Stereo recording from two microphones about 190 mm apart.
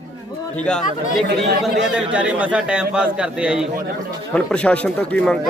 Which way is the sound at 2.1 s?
5° right (ahead or behind).